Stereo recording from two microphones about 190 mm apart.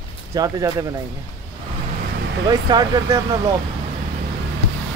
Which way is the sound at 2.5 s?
20° right (ahead or behind).